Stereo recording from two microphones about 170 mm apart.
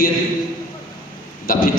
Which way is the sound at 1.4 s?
55° left (ahead or behind).